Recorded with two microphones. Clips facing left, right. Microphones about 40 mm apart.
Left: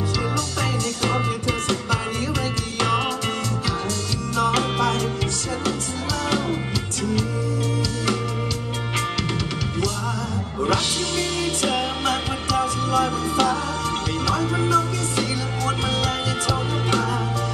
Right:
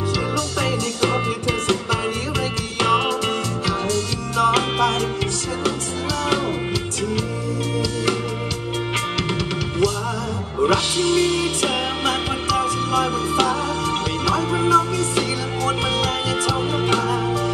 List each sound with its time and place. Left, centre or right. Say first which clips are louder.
0.6 s music: right 3 dB; centre
10.6 s music: right 4 dB; centre